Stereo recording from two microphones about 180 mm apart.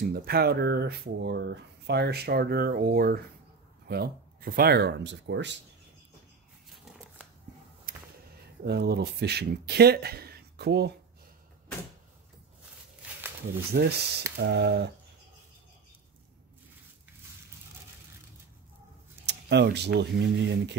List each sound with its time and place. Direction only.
0.1 s speech: 60° right (ahead or behind); by 5.5 s 80° right
7.9 s a sound: 50° right (ahead or behind)
8.6 s speech: 65° right (ahead or behind)
13.7 s speech: 65° right (ahead or behind)
19.2 s speech: 70° right (ahead or behind)